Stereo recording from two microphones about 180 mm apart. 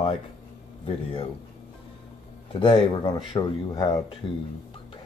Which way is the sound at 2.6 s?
25° left (ahead or behind).